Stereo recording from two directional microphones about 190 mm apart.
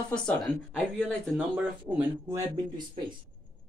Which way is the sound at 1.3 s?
10° right (ahead or behind).